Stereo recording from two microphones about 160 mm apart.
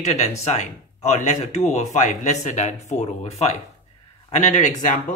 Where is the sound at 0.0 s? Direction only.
45° left (ahead or behind).